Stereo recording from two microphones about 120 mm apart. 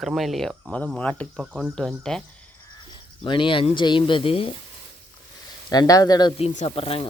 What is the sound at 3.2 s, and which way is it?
Speech, 45° left (ahead or behind).